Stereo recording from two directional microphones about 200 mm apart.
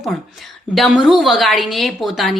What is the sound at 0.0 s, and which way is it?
A woman's voice, centre (ahead or behind).